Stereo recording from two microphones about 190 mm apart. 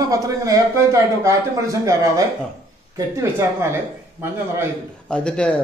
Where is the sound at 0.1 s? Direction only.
15° right (ahead or behind).